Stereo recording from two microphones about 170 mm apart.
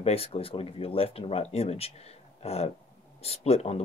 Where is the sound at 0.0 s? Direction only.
35° left (ahead or behind).